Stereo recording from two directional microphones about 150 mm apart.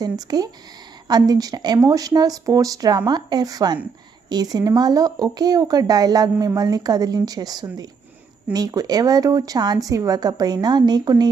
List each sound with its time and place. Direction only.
0.0 s speech: 25° right (ahead or behind)